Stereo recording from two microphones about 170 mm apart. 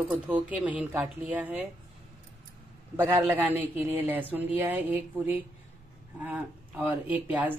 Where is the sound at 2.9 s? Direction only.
20° right (ahead or behind).